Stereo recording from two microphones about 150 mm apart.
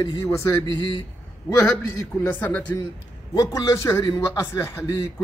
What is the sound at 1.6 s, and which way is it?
Speech, 10° left (ahead or behind).